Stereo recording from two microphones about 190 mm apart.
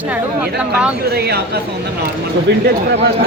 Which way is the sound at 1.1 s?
55° right (ahead or behind).